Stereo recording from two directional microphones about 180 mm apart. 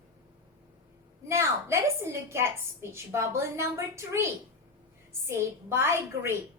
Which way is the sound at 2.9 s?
15° right (ahead or behind).